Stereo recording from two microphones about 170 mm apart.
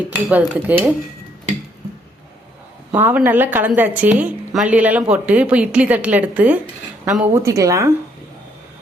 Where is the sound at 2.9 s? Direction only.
10° right (ahead or behind).